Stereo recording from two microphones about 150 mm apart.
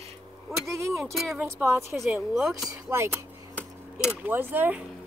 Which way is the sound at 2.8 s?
15° right (ahead or behind).